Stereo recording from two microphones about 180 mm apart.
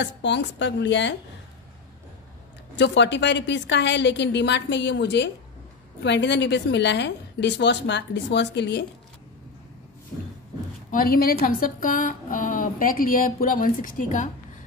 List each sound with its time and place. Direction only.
0.0 s a woman's voice: 85° left
2.7 s a woman's voice: 80° left
10.9 s a woman's voice: 55° left (ahead or behind)